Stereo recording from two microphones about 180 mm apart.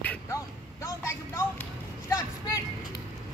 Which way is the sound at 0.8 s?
15° left (ahead or behind).